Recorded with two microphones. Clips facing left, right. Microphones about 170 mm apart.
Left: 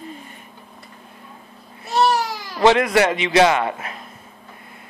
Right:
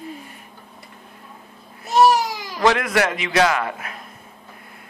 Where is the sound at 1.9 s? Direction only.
15° right (ahead or behind).